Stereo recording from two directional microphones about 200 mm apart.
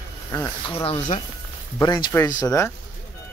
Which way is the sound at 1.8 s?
20° left (ahead or behind).